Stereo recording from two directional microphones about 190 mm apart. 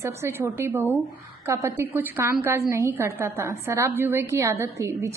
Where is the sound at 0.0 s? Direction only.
15° right (ahead or behind).